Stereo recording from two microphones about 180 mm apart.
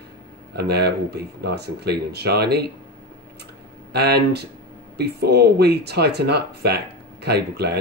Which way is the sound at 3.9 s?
65° right (ahead or behind).